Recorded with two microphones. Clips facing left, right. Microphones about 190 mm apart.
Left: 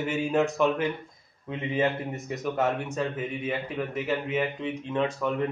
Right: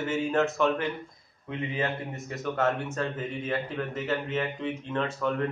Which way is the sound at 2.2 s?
15° left (ahead or behind).